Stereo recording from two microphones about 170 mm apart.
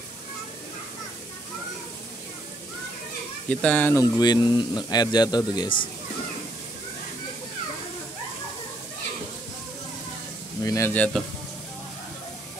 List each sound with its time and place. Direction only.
3.4 s speech: 5° left (ahead or behind)
4.0 s speech: 25° left (ahead or behind)
10.6 s speech: 20° left (ahead or behind)